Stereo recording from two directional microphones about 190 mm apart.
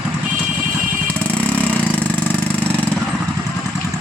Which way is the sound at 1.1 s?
5° left (ahead or behind).